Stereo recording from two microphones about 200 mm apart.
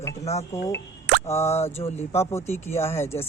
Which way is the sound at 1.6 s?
30° left (ahead or behind).